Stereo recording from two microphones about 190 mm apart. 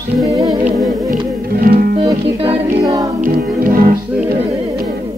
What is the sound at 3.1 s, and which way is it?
Music, 45° right (ahead or behind).